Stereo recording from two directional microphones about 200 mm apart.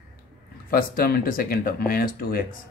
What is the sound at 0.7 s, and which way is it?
Speech, 50° left (ahead or behind).